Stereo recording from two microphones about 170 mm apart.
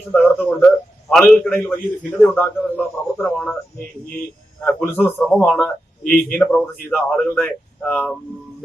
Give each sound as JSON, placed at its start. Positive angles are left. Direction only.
{"t": 0.1, "sound": "a man's voice", "side_deg": 10}
{"t": 6.0, "sound": "a man's voice", "side_deg": 55}
{"t": 6.3, "sound": "a man's voice", "side_deg": 10}